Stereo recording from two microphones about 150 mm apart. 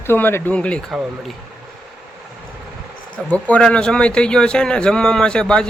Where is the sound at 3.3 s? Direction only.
10° left (ahead or behind).